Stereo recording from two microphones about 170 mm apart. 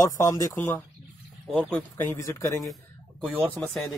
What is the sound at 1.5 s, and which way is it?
Speech, 10° left (ahead or behind).